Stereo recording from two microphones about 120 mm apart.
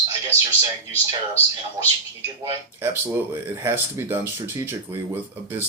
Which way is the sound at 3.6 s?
20° right (ahead or behind).